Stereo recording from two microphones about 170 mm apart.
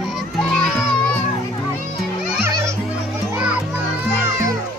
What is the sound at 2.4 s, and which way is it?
Music, 15° right (ahead or behind).